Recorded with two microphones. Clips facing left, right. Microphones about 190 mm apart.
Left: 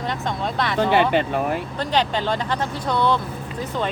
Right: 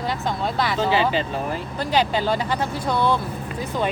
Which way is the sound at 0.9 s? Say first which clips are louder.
Left 5 dB; 60° left (ahead or behind).